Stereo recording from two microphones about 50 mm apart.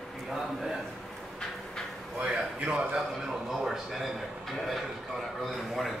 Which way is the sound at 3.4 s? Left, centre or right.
Centre.